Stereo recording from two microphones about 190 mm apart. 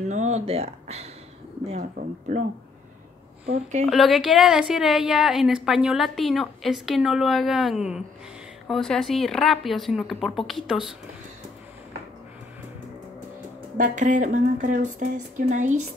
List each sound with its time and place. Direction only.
0.1 s speech: 35° right (ahead or behind)
3.9 s a woman's voice: centre (ahead or behind)
13.7 s speech: 40° right (ahead or behind)